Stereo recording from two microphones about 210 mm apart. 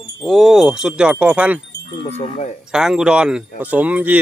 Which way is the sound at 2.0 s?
25° left (ahead or behind).